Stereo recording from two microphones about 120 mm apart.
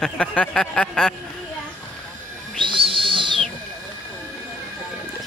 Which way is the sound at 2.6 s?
45° right (ahead or behind).